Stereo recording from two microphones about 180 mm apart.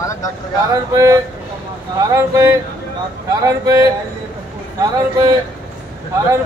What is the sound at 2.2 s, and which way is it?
Speech, 15° right (ahead or behind).